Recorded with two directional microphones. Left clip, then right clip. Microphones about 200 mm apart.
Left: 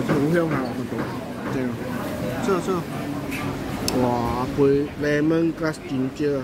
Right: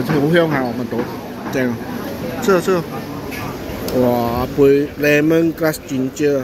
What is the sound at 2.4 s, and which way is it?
Speech, 20° right (ahead or behind).